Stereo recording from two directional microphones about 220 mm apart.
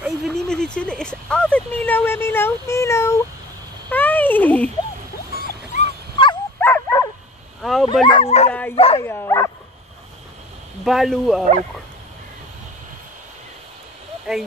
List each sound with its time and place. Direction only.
0.0 s speech: centre (ahead or behind)
3.9 s a sound: 10° left (ahead or behind)
5.4 s dog: 40° left (ahead or behind)
6.6 s dog: 10° left (ahead or behind)
7.6 s bow-wow: centre (ahead or behind)
8.1 s speech: 25° left (ahead or behind)
9.0 s speech: 10° left (ahead or behind)
10.8 s speech: centre (ahead or behind)
14.3 s speech: centre (ahead or behind)